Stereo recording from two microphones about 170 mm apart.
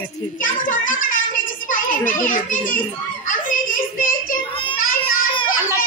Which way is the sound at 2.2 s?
50° left (ahead or behind).